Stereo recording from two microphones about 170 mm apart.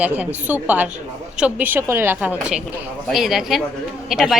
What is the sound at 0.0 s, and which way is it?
A woman's voice, 10° right (ahead or behind).